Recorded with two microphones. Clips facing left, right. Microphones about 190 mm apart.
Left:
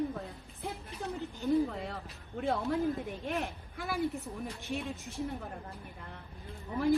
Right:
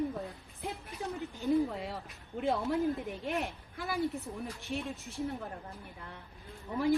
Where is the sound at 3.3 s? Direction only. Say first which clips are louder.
Even; centre (ahead or behind).